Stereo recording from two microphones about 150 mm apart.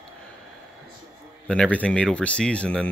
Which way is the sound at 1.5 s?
10° left (ahead or behind).